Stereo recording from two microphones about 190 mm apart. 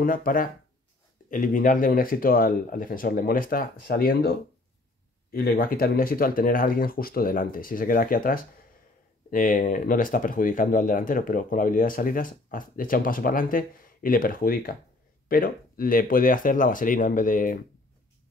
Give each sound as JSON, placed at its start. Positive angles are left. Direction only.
{"t": 0.0, "sound": "speech", "side_deg": 45}